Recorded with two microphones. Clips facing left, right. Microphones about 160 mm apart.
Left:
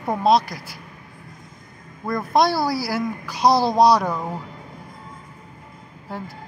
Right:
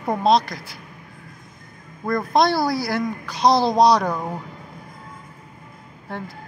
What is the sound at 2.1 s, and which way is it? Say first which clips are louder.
Speech: right 1 dB; 5° left (ahead or behind).